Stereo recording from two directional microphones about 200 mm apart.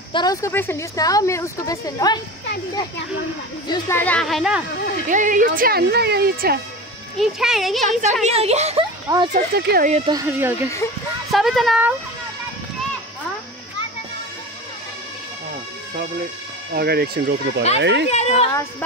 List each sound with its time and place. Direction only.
0.1 s speech: 20° left (ahead or behind)
3.6 s speech: 20° left (ahead or behind)
4.0 s a child's voice: 5° left (ahead or behind)
5.0 s speech: 40° right (ahead or behind)
7.2 s a child's voice: centre (ahead or behind)
8.0 s speech: 35° right (ahead or behind)
9.1 s speech: 20° right (ahead or behind)
9.6 s speech: 55° right (ahead or behind)
9.8 s speech: 35° right (ahead or behind)
10.1 s speech: 10° right (ahead or behind)
11.3 s a child's voice: centre (ahead or behind)
16.7 s a child's voice: 50° right (ahead or behind)
18.1 s speech: 30° left (ahead or behind)
18.5 s speech: 10° left (ahead or behind)